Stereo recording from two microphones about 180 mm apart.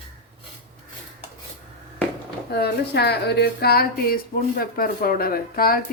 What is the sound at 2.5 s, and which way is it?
Speech, 65° left (ahead or behind).